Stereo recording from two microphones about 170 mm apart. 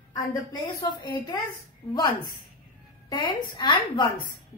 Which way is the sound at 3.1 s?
25° left (ahead or behind).